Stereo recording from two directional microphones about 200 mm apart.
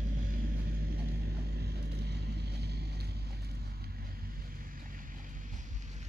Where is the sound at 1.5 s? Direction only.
55° right (ahead or behind).